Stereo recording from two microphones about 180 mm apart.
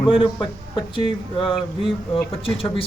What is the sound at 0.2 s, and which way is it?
Speech, 25° left (ahead or behind).